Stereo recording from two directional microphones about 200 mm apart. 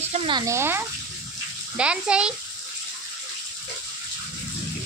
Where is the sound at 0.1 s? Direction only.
25° right (ahead or behind); by 2.3 s 5° right (ahead or behind).